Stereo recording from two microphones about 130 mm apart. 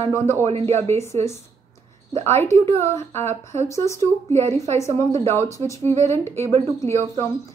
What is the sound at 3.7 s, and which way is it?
Speech, 25° left (ahead or behind).